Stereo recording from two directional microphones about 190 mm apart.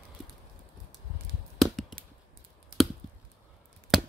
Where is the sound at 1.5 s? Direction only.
Centre (ahead or behind).